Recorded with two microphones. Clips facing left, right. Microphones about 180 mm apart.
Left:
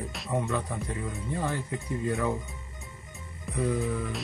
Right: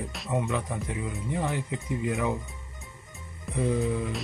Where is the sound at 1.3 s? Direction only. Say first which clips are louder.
Right 1 dB; 15° right (ahead or behind).